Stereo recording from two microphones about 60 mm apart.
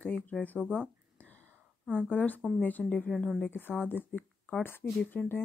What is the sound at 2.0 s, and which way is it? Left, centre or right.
Speech, left.